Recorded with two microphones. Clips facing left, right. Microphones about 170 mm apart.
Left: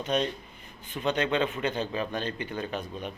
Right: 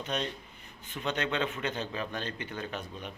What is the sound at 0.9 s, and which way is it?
Speech, 15° left (ahead or behind).